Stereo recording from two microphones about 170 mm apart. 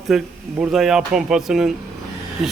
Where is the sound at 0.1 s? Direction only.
Centre (ahead or behind).